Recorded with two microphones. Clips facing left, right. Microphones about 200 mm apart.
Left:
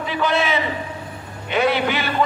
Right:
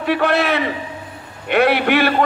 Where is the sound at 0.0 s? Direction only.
65° right (ahead or behind).